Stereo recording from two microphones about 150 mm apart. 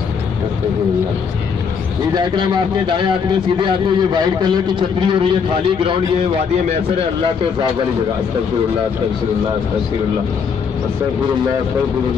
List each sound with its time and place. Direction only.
2.1 s a man's voice: 30° right (ahead or behind)